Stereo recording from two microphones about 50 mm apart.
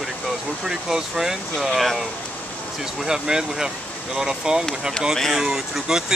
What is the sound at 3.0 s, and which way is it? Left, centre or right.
Speech, centre.